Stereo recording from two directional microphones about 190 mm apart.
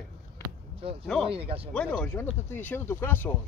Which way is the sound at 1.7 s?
5° left (ahead or behind).